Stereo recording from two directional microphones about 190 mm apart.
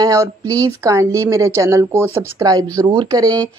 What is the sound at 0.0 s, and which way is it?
Speech, 20° right (ahead or behind).